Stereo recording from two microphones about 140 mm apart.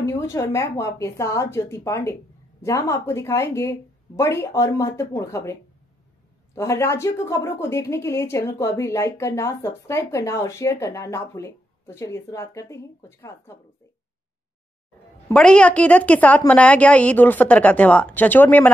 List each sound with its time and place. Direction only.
0.0 s a woman's voice: 20° left (ahead or behind)
15.3 s a woman's voice: 5° left (ahead or behind)